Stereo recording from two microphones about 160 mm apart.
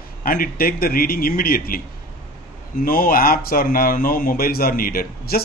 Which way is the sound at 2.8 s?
60° left (ahead or behind).